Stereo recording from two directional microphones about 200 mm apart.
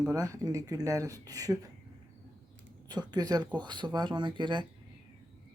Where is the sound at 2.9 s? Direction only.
20° right (ahead or behind).